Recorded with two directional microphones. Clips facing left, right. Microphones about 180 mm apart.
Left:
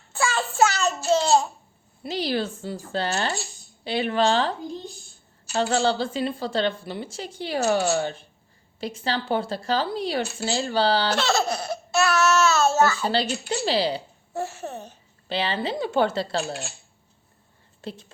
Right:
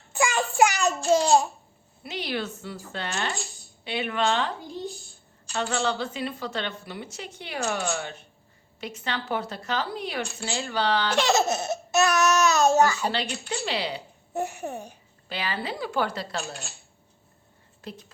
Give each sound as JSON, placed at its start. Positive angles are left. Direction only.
{"t": 0.1, "sound": "child singing", "side_deg": -15}
{"t": 1.1, "sound": "babbling", "side_deg": -10}
{"t": 2.0, "sound": "a woman's voice", "side_deg": 35}
{"t": 5.5, "sound": "a woman's voice", "side_deg": 35}
{"t": 11.1, "sound": "a sound", "side_deg": -15}
{"t": 13.5, "sound": "a woman's voice", "side_deg": 35}
{"t": 14.3, "sound": "speech", "side_deg": -15}
{"t": 15.3, "sound": "a woman's voice", "side_deg": 30}
{"t": 17.8, "sound": "a woman's voice", "side_deg": 30}